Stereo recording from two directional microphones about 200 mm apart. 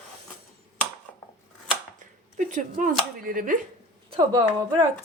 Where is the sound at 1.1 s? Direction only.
10° left (ahead or behind).